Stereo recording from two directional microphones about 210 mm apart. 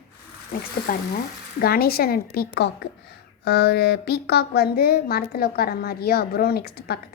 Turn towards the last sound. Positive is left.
turn(degrees=50)  # may be behind; listen again after turning